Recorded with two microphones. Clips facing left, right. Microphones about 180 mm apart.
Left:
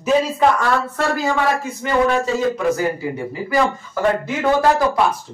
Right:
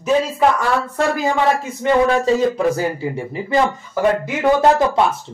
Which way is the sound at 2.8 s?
30° right (ahead or behind).